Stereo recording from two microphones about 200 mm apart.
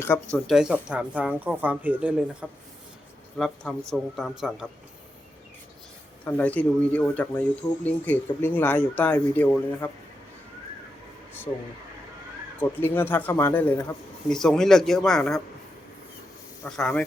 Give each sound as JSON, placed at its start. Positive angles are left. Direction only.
{"t": 0.3, "sound": "speech", "side_deg": 0}
{"t": 6.2, "sound": "speech", "side_deg": 10}
{"t": 11.5, "sound": "speech", "side_deg": 20}
{"t": 12.5, "sound": "speech", "side_deg": 10}
{"t": 16.6, "sound": "speech", "side_deg": 5}